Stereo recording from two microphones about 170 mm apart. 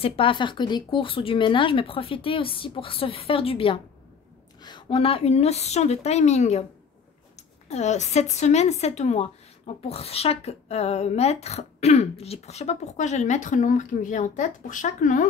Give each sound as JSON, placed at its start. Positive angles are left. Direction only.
{"t": 0.0, "sound": "speech", "side_deg": 30}
{"t": 7.6, "sound": "speech", "side_deg": 40}